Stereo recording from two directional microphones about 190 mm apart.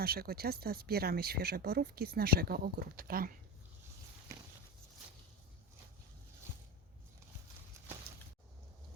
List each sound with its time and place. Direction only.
0.0 s speech: 55° right (ahead or behind)